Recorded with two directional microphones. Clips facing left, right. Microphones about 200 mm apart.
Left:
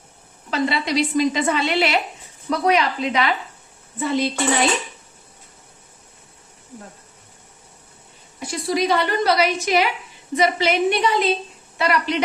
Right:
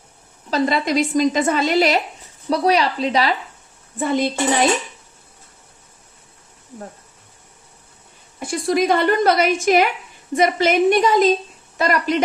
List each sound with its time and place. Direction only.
0.5 s a woman's voice: 45° right (ahead or behind)
4.0 s a woman's voice: 50° right (ahead or behind)
8.4 s a woman's voice: 50° right (ahead or behind)